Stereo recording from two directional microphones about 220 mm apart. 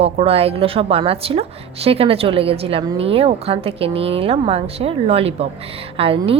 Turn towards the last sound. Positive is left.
turn(degrees=-25)  # may be behind; listen again after turning